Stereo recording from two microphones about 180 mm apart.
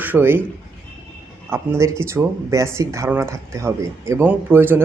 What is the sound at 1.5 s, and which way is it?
Speech, 15° right (ahead or behind).